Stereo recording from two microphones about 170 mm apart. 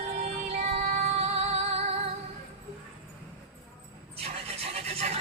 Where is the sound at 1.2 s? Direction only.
35° right (ahead or behind).